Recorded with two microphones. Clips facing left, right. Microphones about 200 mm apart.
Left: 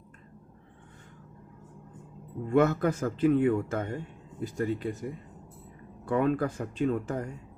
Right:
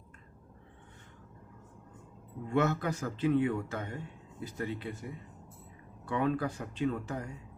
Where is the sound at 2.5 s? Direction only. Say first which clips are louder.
Left 6 dB; 50° left (ahead or behind).